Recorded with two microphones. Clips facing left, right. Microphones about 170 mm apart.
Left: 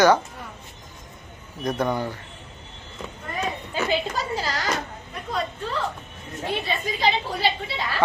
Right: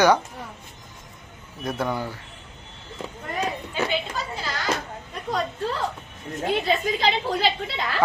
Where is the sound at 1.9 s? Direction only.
15° left (ahead or behind).